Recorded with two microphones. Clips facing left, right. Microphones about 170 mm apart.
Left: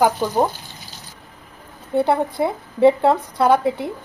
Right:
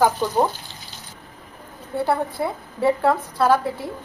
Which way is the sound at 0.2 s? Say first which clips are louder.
Left 1 dB; 10° left (ahead or behind).